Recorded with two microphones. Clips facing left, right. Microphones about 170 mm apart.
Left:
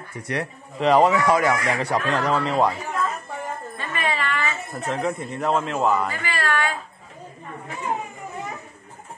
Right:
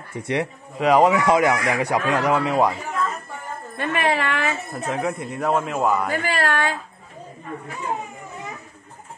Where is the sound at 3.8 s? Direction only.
60° right (ahead or behind).